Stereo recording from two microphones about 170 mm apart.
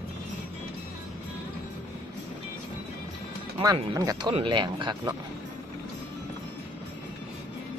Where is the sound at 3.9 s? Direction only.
20° right (ahead or behind).